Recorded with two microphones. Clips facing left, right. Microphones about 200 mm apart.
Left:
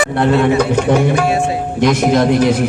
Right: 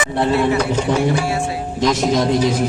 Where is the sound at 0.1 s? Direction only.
65° left (ahead or behind).